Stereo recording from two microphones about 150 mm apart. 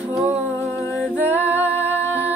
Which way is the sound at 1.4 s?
15° right (ahead or behind).